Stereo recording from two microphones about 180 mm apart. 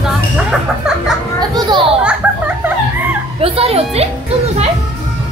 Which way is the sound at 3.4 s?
35° right (ahead or behind).